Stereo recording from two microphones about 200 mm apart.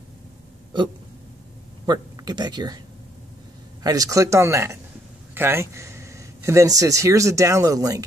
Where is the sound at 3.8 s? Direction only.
20° right (ahead or behind).